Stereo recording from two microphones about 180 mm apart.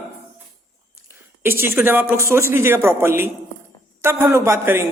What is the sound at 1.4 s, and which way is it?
Speech, 10° right (ahead or behind).